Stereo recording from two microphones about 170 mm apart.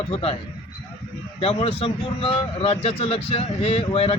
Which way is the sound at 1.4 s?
35° left (ahead or behind).